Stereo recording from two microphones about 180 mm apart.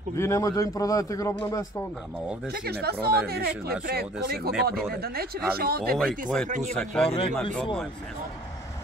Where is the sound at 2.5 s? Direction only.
60° right (ahead or behind).